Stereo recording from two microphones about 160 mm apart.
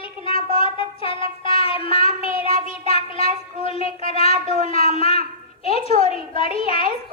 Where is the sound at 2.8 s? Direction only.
40° left (ahead or behind).